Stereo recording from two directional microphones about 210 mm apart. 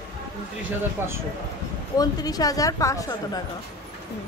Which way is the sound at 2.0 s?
15° left (ahead or behind).